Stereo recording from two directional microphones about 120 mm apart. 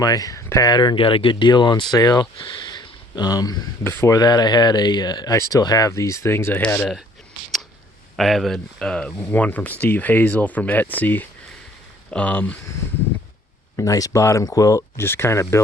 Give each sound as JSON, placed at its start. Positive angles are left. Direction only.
{"t": 0.0, "sound": "speech", "side_deg": 30}
{"t": 8.1, "sound": "speech", "side_deg": 0}
{"t": 13.7, "sound": "speech", "side_deg": 30}